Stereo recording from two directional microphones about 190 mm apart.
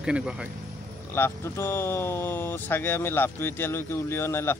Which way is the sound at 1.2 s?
10° left (ahead or behind).